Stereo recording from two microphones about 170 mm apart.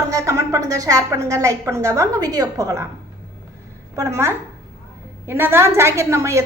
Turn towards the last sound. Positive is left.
turn(degrees=-15)  # may be behind; listen again after turning